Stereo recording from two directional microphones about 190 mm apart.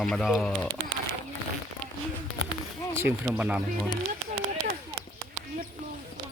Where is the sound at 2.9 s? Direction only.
10° right (ahead or behind).